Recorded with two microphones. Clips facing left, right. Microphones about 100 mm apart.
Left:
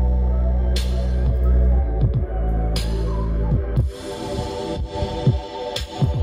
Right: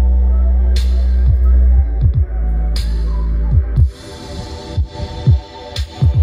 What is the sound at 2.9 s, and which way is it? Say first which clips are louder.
Music: left 3 dB; 10° right (ahead or behind).